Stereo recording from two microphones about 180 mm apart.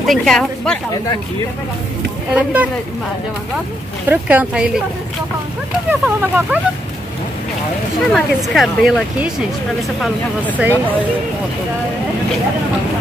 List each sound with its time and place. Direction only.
0.0 s speech: centre (ahead or behind)
2.3 s speech: 10° right (ahead or behind)
4.1 s speech: 10° right (ahead or behind)
5.9 s speech: 5° right (ahead or behind)
8.1 s speech: centre (ahead or behind)